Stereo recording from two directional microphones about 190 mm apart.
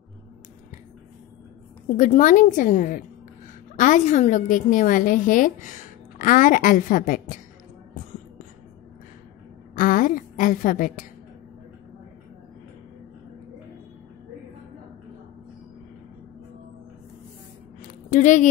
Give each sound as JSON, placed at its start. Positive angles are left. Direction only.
{"t": 2.0, "sound": "a woman's voice", "side_deg": 40}
{"t": 9.8, "sound": "a woman's voice", "side_deg": 45}
{"t": 18.1, "sound": "a woman's voice", "side_deg": 40}